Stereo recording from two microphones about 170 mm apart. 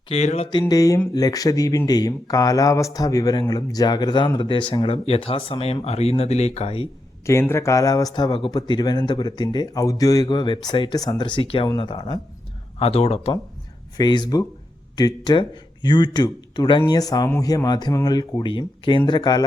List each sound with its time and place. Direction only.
0.1 s speech: 40° left (ahead or behind)
0.6 s speech: 20° left (ahead or behind); by 6.8 s 35° left (ahead or behind)
7.3 s speech: 15° left (ahead or behind); by 13.3 s 35° left (ahead or behind)
13.9 s speech: 25° left (ahead or behind)